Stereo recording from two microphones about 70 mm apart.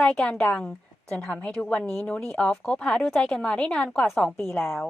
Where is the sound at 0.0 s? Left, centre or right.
Centre.